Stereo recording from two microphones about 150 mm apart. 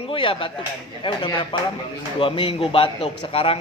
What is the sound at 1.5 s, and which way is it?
A man's voice, 35° left (ahead or behind).